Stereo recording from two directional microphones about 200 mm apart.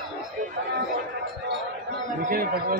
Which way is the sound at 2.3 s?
45° right (ahead or behind).